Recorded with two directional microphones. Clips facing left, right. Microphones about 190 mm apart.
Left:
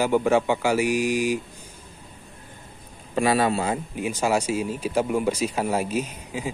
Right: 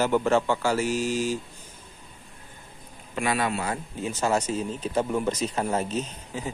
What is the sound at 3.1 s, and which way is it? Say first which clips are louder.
Speech: left 5 dB; 30° left (ahead or behind).